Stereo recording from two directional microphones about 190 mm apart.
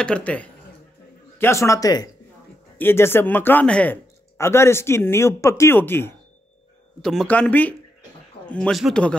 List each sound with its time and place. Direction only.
0.0 s speech: 5° left (ahead or behind)